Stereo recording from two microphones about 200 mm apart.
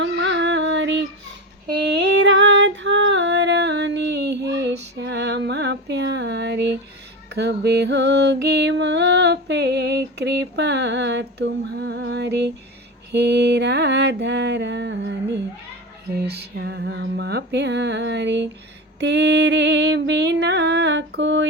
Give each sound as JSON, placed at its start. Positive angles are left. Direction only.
{"t": 0.0, "sound": "music", "side_deg": -65}
{"t": 1.6, "sound": "female singing", "side_deg": -60}
{"t": 7.3, "sound": "music", "side_deg": -55}
{"t": 13.1, "sound": "mantra", "side_deg": -55}
{"t": 16.1, "sound": "a sound", "side_deg": -55}
{"t": 18.9, "sound": "music", "side_deg": -60}